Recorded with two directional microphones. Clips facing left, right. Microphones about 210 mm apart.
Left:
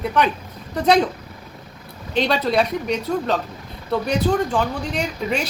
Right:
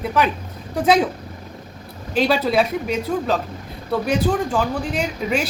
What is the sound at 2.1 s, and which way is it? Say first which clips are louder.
A woman's voice: right 1 dB; 5° right (ahead or behind).